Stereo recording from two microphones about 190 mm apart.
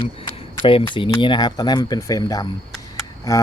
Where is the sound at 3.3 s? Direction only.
15° left (ahead or behind).